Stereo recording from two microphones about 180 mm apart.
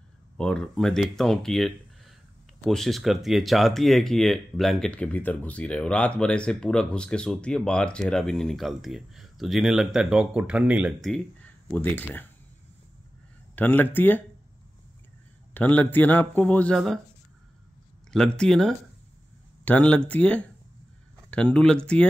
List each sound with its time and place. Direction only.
0.4 s speech: 5° left (ahead or behind)
13.6 s speech: 10° left (ahead or behind)
15.5 s speech: 10° left (ahead or behind)
18.1 s speech: 5° left (ahead or behind)